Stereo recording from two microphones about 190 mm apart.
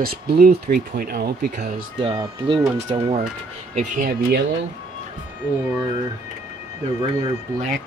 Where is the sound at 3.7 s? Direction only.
50° right (ahead or behind).